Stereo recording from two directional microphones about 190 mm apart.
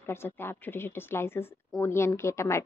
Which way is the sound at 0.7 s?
10° left (ahead or behind).